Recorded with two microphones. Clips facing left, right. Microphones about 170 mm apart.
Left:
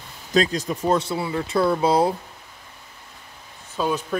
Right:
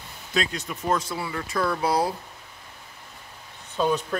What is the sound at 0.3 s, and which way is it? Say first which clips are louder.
Speech: left 7 dB; 35° left (ahead or behind).